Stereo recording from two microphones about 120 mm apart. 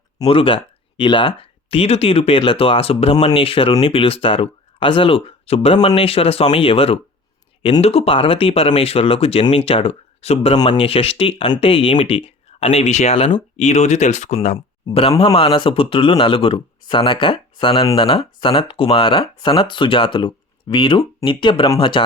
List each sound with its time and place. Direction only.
0.3 s speech: 50° left (ahead or behind); by 14.5 s 75° left (ahead or behind)
15.2 s speech: 50° left (ahead or behind)